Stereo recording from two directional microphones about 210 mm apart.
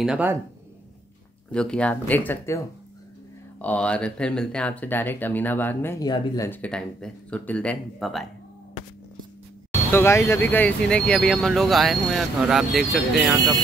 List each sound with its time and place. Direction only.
0.0 s speech: 5° right (ahead or behind)
1.5 s speech: 5° left (ahead or behind)
3.6 s speech: 5° left (ahead or behind)
9.8 s speech: 10° left (ahead or behind)